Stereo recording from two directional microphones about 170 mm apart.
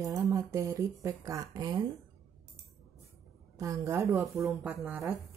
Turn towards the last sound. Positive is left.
turn(degrees=-10)  # may be behind; listen again after turning